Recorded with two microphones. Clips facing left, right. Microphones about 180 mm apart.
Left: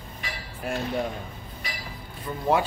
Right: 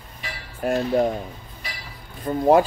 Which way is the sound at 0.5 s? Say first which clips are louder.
Right 8 dB; 45° right (ahead or behind).